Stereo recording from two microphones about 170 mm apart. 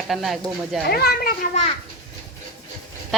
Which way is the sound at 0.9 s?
65° left (ahead or behind).